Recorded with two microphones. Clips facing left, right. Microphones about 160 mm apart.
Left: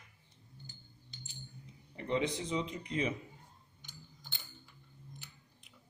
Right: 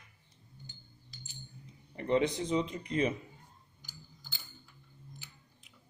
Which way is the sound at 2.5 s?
45° right (ahead or behind).